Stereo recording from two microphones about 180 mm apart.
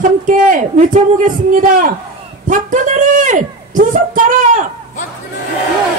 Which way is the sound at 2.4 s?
45° right (ahead or behind).